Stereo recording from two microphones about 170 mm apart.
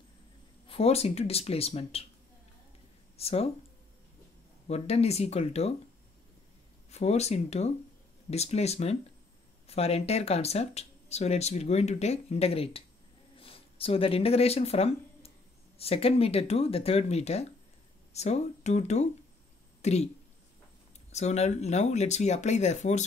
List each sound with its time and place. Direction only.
0.7 s speech: 35° left (ahead or behind)
3.2 s speech: 35° left (ahead or behind)
4.6 s speech: 35° left (ahead or behind)
6.9 s speech: 40° left (ahead or behind)
21.1 s speech: 40° left (ahead or behind)